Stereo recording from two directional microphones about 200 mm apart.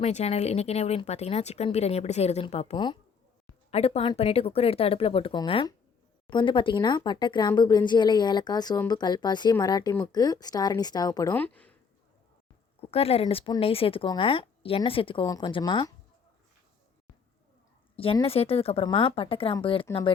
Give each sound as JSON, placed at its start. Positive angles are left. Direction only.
{"t": 0.0, "sound": "speech", "side_deg": 30}
{"t": 12.9, "sound": "speech", "side_deg": 30}
{"t": 17.9, "sound": "speech", "side_deg": 25}